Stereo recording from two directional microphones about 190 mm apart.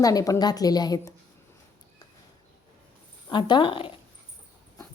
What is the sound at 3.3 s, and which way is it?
Speech, 25° left (ahead or behind).